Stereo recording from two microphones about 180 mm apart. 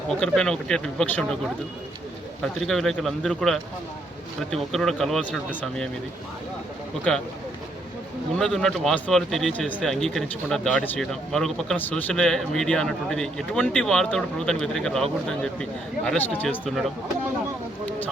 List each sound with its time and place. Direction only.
0.1 s speech: 5° left (ahead or behind)
2.4 s speech: centre (ahead or behind)
7.1 s speech: 5° left (ahead or behind)
8.4 s speech: centre (ahead or behind)